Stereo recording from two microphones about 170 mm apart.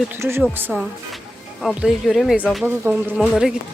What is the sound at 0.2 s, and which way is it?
Speech, 15° right (ahead or behind).